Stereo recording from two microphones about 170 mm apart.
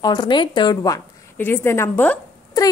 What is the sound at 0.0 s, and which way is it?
A woman's voice, 25° left (ahead or behind).